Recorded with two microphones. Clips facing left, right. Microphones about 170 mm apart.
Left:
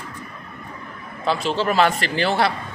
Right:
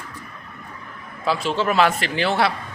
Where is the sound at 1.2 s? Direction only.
Centre (ahead or behind).